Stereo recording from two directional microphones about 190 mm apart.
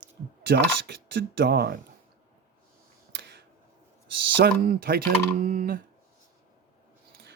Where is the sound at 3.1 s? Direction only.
60° right (ahead or behind).